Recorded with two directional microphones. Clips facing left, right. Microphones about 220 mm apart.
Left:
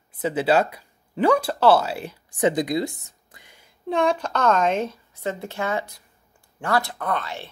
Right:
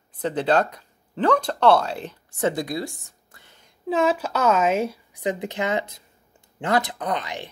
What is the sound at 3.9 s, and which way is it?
A woman's voice, 5° right (ahead or behind).